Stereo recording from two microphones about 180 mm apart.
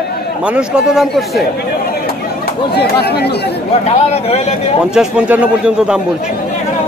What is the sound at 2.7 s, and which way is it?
Speech, 65° left (ahead or behind).